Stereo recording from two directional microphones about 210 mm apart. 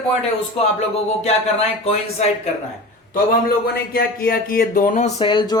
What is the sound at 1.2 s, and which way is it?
Speech, 30° left (ahead or behind).